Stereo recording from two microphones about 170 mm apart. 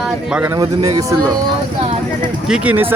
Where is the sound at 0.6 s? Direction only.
20° right (ahead or behind).